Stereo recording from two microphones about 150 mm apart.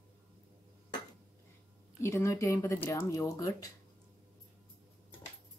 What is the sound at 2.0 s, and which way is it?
Speech, 15° left (ahead or behind).